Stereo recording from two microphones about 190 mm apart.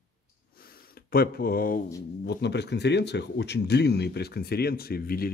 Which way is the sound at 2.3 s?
60° left (ahead or behind).